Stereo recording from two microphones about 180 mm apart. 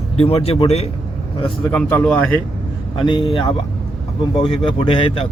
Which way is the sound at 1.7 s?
10° left (ahead or behind).